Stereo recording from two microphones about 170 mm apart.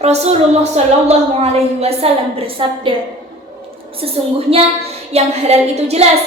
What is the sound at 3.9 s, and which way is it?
A woman's voice, 35° right (ahead or behind).